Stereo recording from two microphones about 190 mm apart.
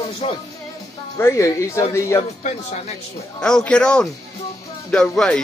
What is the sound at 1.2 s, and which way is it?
Speech, 15° left (ahead or behind).